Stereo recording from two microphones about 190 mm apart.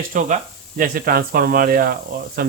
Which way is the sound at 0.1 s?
40° right (ahead or behind).